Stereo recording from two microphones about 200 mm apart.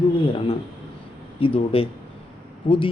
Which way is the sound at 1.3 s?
25° left (ahead or behind).